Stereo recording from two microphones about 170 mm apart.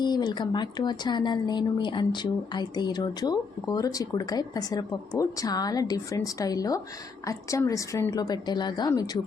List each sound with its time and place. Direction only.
0.0 s speech: 25° left (ahead or behind)